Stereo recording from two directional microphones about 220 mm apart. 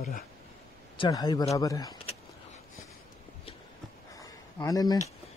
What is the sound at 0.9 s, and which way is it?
A man's voice, 20° left (ahead or behind).